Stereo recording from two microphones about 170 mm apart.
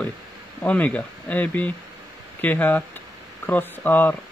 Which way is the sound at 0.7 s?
10° left (ahead or behind).